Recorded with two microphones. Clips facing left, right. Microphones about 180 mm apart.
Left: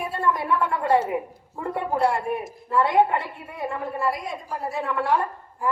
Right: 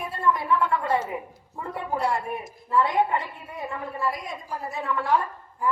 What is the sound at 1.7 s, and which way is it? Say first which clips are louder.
A woman's voice: left 4 dB; 55° left (ahead or behind).